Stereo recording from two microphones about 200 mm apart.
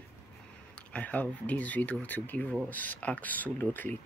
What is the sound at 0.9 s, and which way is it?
Speech, 5° left (ahead or behind).